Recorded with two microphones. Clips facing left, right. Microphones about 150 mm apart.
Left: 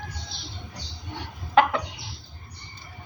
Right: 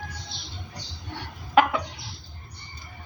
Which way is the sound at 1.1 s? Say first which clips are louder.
Left 1 dB; 15° left (ahead or behind).